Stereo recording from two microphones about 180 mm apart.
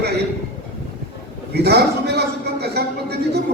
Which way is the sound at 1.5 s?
65° right (ahead or behind).